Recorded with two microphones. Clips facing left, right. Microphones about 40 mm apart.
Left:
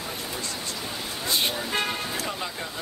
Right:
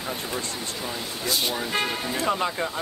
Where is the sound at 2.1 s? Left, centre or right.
Right.